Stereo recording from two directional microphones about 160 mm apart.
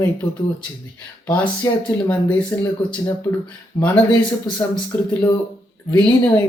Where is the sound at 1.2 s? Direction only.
10° left (ahead or behind).